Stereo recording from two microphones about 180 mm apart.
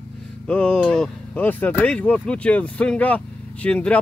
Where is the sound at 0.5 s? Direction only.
5° left (ahead or behind).